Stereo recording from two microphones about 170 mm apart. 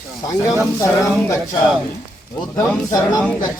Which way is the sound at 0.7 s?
15° left (ahead or behind).